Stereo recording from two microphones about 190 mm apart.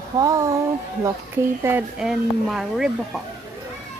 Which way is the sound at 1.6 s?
5° right (ahead or behind).